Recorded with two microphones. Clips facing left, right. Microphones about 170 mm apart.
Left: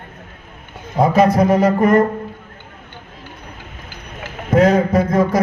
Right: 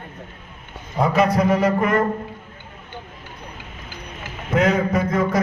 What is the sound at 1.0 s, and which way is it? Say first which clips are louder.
Speech: left 4 dB; 40° left (ahead or behind).